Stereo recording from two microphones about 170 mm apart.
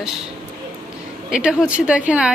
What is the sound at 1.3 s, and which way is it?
A woman's voice, 5° right (ahead or behind).